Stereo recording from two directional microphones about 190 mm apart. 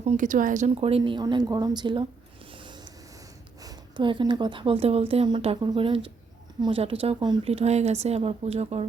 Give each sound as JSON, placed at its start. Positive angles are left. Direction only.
{"t": 0.0, "sound": "speech", "side_deg": -40}
{"t": 2.5, "sound": "vehicle", "side_deg": -25}
{"t": 3.6, "sound": "speech", "side_deg": -20}